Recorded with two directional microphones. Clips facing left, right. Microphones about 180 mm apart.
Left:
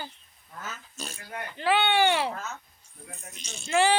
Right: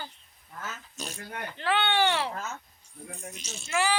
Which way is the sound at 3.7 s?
30° left (ahead or behind).